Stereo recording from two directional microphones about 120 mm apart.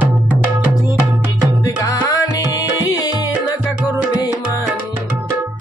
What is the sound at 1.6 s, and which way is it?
Music, 25° left (ahead or behind).